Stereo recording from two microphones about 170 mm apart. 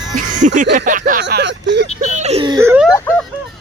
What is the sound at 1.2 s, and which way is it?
Speech, 90° right.